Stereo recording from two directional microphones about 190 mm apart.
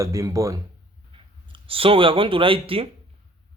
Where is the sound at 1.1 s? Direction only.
30° right (ahead or behind).